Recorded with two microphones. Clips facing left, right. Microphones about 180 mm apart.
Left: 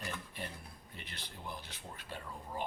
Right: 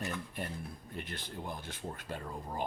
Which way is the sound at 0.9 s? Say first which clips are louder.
Right 8 dB; 50° right (ahead or behind).